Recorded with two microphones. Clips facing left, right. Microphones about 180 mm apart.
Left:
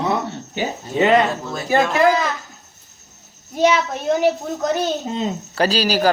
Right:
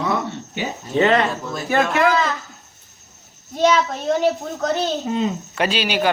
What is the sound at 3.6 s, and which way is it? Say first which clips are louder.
A woman's voice: even; 10° left (ahead or behind).